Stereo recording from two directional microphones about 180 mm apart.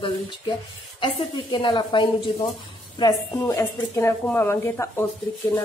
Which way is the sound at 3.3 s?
20° left (ahead or behind).